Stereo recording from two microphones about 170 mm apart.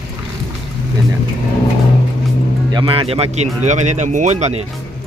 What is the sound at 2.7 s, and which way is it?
Speech, 30° right (ahead or behind).